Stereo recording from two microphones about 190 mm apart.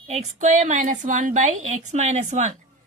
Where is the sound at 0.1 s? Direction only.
35° right (ahead or behind).